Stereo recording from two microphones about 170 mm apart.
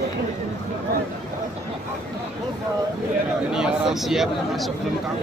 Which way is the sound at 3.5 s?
5° right (ahead or behind).